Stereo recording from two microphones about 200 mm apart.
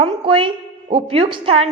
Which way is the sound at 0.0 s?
25° right (ahead or behind).